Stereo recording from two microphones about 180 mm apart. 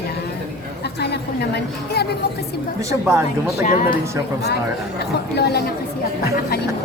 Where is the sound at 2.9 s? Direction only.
15° right (ahead or behind).